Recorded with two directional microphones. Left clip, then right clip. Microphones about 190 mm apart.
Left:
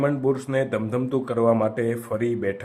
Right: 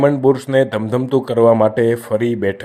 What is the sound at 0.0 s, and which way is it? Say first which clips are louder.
Speech: right 9 dB; 30° right (ahead or behind).